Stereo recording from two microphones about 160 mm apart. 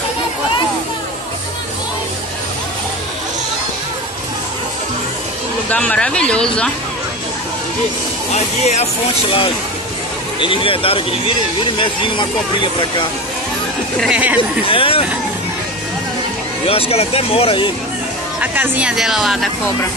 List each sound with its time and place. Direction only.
5.7 s speech: 10° left (ahead or behind)
8.3 s speech: 45° left (ahead or behind)
10.4 s speech: 35° left (ahead or behind)
13.9 s speech: 5° right (ahead or behind)
14.7 s speech: 35° left (ahead or behind)
16.6 s speech: 35° left (ahead or behind)
18.4 s speech: 10° right (ahead or behind)